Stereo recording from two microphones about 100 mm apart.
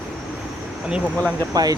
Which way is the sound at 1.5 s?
40° right (ahead or behind).